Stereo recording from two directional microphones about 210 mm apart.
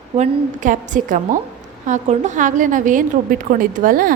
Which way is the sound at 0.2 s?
40° right (ahead or behind).